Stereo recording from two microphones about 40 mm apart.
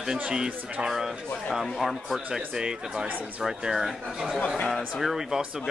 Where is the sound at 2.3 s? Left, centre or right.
Centre.